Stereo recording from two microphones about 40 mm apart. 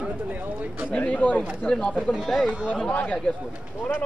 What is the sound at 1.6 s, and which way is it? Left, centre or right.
Speech, left.